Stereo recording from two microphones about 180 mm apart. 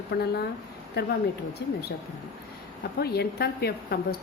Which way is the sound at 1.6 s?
70° left (ahead or behind).